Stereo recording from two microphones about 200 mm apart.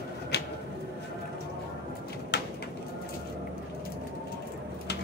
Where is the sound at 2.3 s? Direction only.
60° left (ahead or behind).